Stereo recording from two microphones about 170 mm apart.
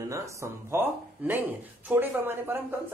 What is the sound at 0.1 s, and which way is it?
Speech, 15° right (ahead or behind).